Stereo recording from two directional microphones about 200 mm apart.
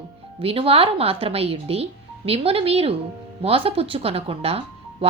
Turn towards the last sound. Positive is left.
turn(degrees=-30)  # may be behind; listen again after turning